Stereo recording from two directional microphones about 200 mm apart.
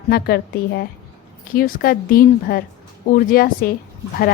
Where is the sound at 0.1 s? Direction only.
50° left (ahead or behind).